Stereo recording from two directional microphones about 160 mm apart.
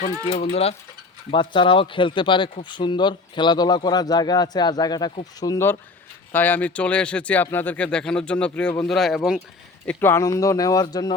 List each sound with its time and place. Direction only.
0.3 s a man's voice: 45° left (ahead or behind); by 9.4 s centre (ahead or behind)
9.8 s a man's voice: 10° left (ahead or behind)